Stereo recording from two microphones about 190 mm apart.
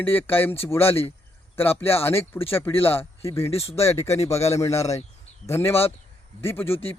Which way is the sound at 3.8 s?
15° left (ahead or behind).